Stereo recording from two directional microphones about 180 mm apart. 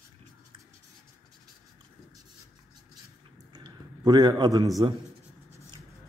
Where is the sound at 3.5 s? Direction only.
25° right (ahead or behind).